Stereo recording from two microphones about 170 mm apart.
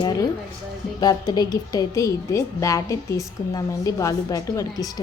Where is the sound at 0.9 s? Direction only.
25° left (ahead or behind).